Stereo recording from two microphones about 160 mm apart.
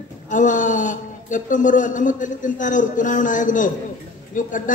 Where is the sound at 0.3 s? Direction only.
50° left (ahead or behind).